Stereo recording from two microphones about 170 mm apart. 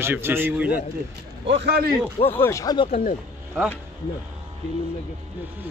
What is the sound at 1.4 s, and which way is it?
Speech, 85° right.